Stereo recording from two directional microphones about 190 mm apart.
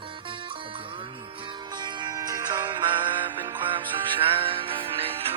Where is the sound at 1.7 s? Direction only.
25° right (ahead or behind).